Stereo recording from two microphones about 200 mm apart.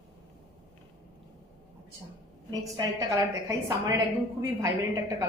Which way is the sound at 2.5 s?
20° right (ahead or behind).